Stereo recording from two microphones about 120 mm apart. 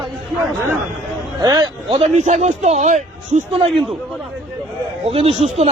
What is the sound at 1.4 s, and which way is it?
Speech, 35° right (ahead or behind).